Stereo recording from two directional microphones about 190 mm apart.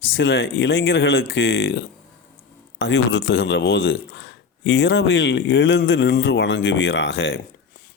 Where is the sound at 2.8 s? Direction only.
65° left (ahead or behind).